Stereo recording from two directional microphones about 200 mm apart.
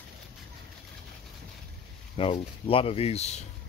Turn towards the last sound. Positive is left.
turn(degrees=30)  # may be behind; listen again after turning